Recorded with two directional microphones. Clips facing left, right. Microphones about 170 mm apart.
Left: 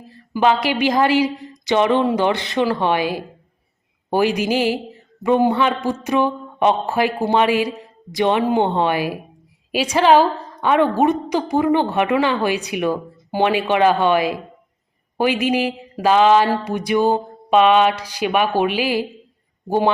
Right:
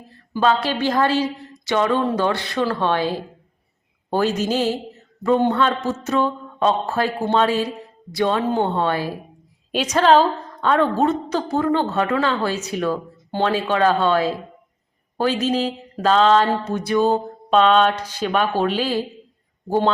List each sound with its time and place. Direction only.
0.3 s a woman's voice: 15° left (ahead or behind)